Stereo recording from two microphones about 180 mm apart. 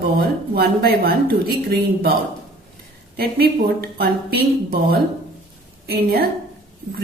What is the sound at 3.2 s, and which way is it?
A woman's voice, 60° right (ahead or behind).